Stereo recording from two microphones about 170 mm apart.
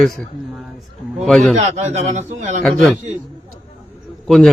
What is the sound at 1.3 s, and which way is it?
Speech, 5° left (ahead or behind).